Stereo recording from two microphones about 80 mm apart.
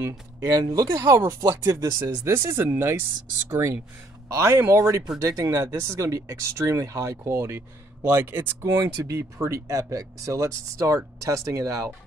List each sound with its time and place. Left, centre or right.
0.4 s speech: right